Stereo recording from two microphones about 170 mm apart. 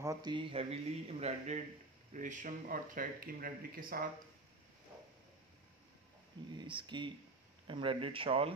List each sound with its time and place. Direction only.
0.0 s speech: 20° right (ahead or behind); by 4.0 s 60° right (ahead or behind)
6.5 s speech: 25° right (ahead or behind)